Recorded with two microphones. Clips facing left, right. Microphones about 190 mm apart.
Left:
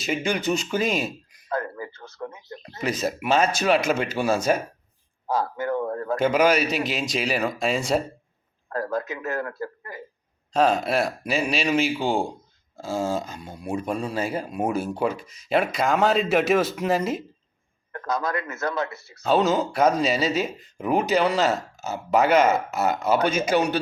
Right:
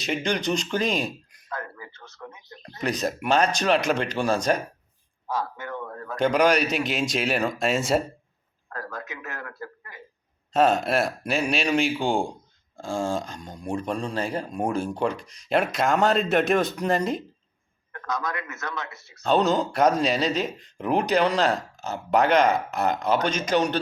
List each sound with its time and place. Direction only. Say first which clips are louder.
0.0 s speech: left 1 dB; 5° left (ahead or behind)
1.5 s a sound: left 7 dB; 35° left (ahead or behind)
2.8 s speech: even; 5° left (ahead or behind)
5.3 s a sound: left 6 dB; 35° left (ahead or behind)
6.1 s speech: even; 5° left (ahead or behind)
8.7 s a man's voice: left 9 dB; 30° left (ahead or behind)
10.5 s speech: even; centre (ahead or behind)
17.9 s a man's voice: left 4 dB; 35° left (ahead or behind)
19.2 s speech: left 1 dB; 5° left (ahead or behind)